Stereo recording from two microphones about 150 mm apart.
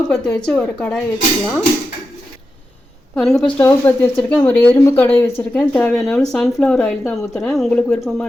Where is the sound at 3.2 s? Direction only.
Centre (ahead or behind).